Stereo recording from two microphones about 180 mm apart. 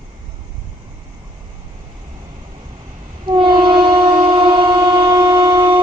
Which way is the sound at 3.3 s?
25° right (ahead or behind).